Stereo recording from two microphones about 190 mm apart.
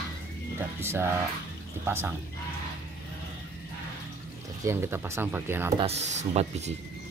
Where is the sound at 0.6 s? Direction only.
10° right (ahead or behind).